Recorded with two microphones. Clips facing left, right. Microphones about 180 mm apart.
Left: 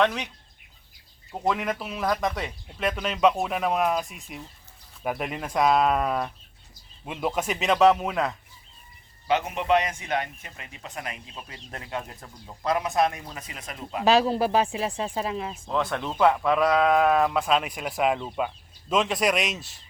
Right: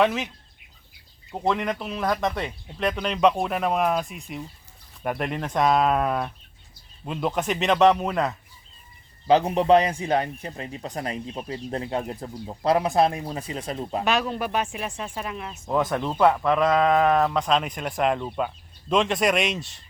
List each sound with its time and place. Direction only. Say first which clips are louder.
0.0 s speech: right 2 dB; centre (ahead or behind)
1.3 s speech: right 2 dB; centre (ahead or behind)
9.2 s a man's voice: right 6 dB; 30° right (ahead or behind)
14.0 s speech: left 6 dB; 35° left (ahead or behind)
15.9 s speech: right 1 dB; 5° right (ahead or behind)